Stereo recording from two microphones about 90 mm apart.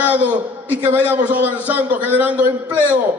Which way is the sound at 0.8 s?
20° right (ahead or behind).